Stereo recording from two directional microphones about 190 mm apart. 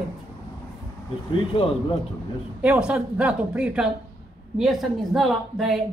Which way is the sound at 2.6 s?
5° right (ahead or behind).